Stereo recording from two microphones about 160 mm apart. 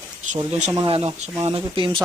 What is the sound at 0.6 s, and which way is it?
Speech, 25° right (ahead or behind).